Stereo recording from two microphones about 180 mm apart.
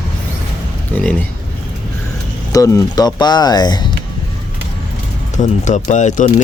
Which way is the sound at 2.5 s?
20° left (ahead or behind).